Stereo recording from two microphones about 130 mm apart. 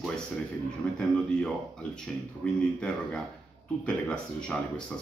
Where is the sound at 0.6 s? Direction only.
5° left (ahead or behind).